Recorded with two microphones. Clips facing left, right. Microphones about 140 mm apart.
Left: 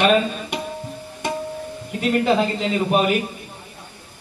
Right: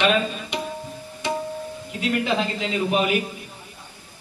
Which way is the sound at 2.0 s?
40° left (ahead or behind).